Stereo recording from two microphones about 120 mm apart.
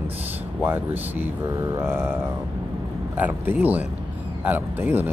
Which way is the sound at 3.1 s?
15° right (ahead or behind).